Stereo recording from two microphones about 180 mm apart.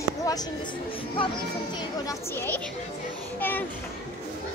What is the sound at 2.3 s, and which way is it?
Speech, 10° left (ahead or behind).